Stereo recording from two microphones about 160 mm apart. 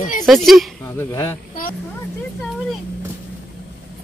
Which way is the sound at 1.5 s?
60° left (ahead or behind).